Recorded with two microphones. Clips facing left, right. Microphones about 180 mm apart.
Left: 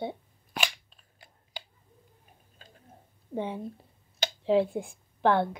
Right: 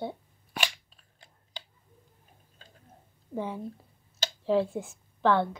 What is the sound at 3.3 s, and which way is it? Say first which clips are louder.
Speech: left 1 dB; 25° left (ahead or behind).